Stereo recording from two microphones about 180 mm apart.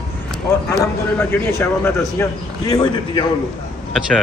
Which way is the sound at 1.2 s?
10° left (ahead or behind).